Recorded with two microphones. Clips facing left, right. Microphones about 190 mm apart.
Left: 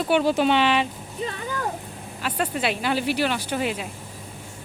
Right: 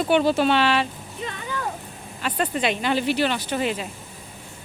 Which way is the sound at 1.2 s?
35° left (ahead or behind).